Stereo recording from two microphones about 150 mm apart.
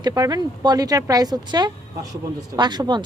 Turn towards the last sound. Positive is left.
turn(degrees=-30)  # may be behind; listen again after turning